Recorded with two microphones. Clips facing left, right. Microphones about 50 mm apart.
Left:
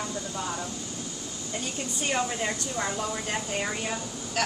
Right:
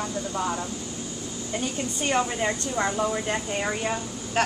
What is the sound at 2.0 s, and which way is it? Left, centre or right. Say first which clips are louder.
A woman's voice: right 4 dB; centre.